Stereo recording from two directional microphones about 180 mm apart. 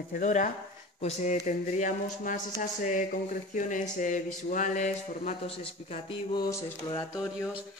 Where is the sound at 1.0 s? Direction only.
40° left (ahead or behind).